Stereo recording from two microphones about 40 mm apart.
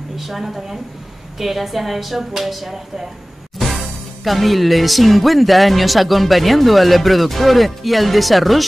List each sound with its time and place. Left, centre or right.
0.2 s music: centre